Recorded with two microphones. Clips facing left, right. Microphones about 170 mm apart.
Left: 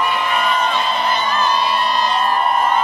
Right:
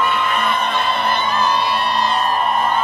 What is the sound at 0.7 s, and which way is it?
Music, 55° right (ahead or behind).